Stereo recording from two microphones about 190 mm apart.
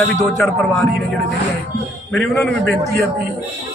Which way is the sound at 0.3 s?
5° left (ahead or behind).